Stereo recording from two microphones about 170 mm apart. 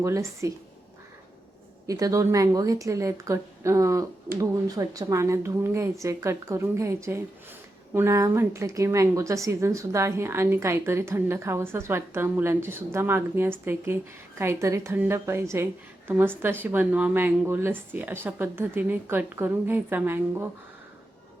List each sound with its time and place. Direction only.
0.0 s a woman's voice: 15° right (ahead or behind)
1.9 s a woman's voice: 20° right (ahead or behind)